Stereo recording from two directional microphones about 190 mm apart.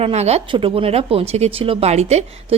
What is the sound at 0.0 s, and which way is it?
Speech, 35° right (ahead or behind).